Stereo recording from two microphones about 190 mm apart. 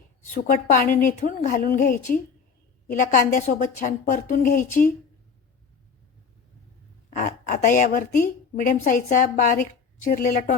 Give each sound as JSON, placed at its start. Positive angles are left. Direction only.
{"t": 0.5, "sound": "a woman's voice", "side_deg": 45}
{"t": 7.1, "sound": "a woman's voice", "side_deg": 40}